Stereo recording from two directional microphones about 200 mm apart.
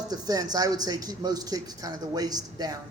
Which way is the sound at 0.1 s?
20° right (ahead or behind).